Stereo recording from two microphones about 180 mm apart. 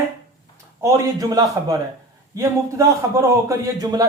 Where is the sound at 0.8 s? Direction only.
15° right (ahead or behind).